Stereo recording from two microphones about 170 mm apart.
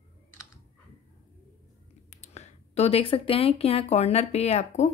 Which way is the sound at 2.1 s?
40° left (ahead or behind).